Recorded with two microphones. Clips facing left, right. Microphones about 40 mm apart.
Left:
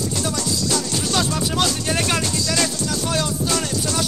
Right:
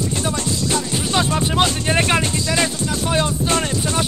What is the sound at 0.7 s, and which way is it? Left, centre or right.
Speech, right.